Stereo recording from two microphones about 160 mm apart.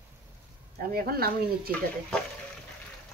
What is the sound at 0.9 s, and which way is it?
Speech, 70° right (ahead or behind).